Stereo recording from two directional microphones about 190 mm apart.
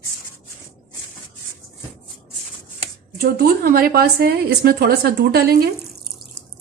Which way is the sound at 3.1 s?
50° right (ahead or behind).